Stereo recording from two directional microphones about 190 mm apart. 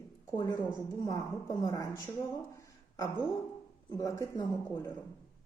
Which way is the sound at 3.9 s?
15° left (ahead or behind).